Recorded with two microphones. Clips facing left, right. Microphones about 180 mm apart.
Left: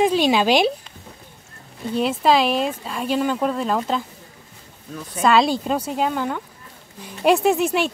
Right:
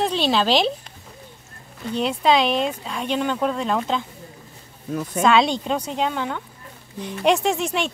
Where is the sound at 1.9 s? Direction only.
5° left (ahead or behind).